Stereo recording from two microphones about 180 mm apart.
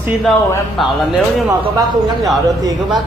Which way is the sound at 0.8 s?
Centre (ahead or behind).